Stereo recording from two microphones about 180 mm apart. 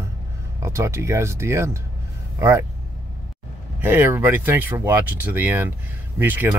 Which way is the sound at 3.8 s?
10° right (ahead or behind).